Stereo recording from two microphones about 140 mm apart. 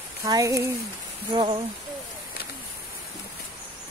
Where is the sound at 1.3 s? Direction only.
35° right (ahead or behind).